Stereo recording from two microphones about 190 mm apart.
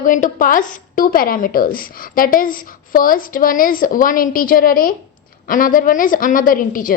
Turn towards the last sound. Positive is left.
turn(degrees=45)  # may be behind; listen again after turning